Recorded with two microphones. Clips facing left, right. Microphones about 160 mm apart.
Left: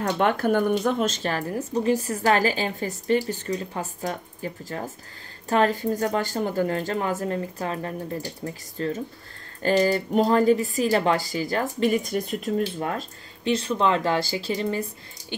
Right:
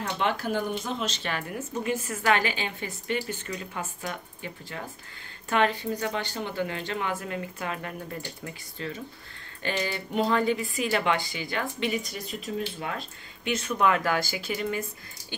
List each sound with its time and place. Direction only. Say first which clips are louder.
0.0 s speech: left 6 dB; 50° left (ahead or behind)
13.4 s speech: left 3 dB; 30° left (ahead or behind)